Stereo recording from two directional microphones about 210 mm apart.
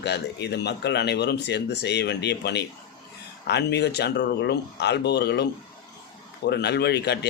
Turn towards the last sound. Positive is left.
turn(degrees=55)  # may be behind; listen again after turning